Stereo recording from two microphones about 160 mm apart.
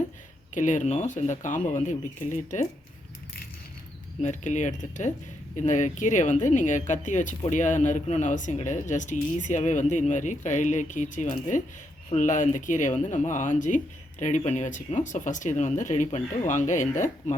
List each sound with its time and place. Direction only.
0.5 s speech: 50° left (ahead or behind)
4.2 s speech: 50° left (ahead or behind)